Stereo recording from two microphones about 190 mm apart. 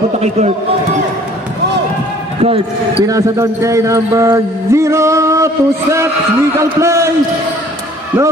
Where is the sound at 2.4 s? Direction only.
35° right (ahead or behind).